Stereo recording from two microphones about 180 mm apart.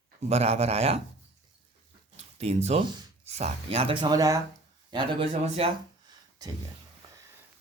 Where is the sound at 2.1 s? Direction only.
35° right (ahead or behind).